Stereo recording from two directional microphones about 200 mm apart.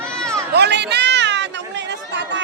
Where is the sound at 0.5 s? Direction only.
55° right (ahead or behind).